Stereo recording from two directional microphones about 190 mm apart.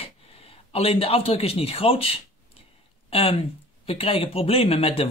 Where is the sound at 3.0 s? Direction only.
30° left (ahead or behind).